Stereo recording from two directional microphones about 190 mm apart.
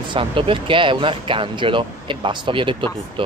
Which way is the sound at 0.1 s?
25° right (ahead or behind).